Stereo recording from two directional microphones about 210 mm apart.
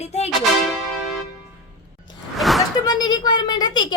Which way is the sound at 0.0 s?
30° left (ahead or behind).